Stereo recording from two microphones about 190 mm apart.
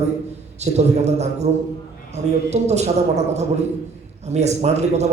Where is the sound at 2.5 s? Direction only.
35° right (ahead or behind).